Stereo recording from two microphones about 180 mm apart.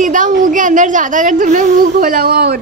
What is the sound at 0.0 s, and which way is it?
Speech, 45° right (ahead or behind).